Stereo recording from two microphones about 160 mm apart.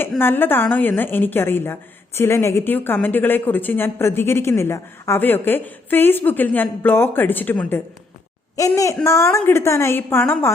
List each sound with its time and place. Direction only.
0.2 s a woman's voice: 15° left (ahead or behind)